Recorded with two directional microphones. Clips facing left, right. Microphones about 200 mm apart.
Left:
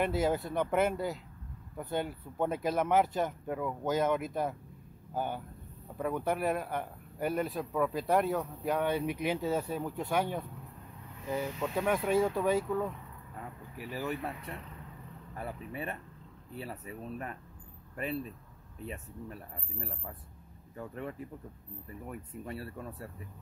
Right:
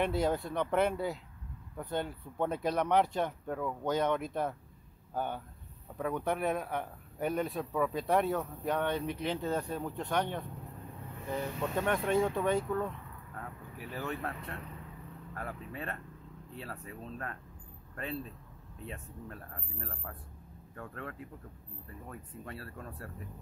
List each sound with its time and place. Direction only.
0.0 s speech: 5° left (ahead or behind)
18.9 s speech: 10° left (ahead or behind)
22.4 s speech: 15° left (ahead or behind)